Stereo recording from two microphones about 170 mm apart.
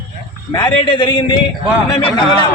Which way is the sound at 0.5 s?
25° left (ahead or behind).